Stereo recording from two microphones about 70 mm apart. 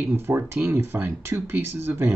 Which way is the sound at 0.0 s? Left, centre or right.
Right.